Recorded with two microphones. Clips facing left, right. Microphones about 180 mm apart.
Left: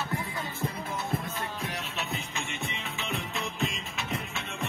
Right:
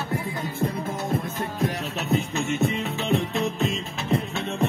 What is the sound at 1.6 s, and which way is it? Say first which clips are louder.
Music: right 9 dB; 40° right (ahead or behind).